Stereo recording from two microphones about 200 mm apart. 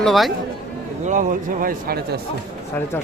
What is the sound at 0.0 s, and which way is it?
Speech, centre (ahead or behind).